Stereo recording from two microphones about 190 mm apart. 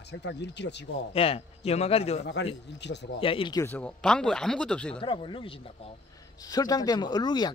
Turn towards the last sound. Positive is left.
turn(degrees=20)  # may be behind; listen again after turning